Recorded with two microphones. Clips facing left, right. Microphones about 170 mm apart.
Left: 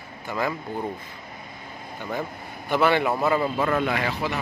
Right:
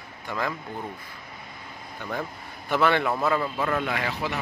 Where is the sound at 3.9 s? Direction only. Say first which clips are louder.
Left 2 dB; 35° left (ahead or behind).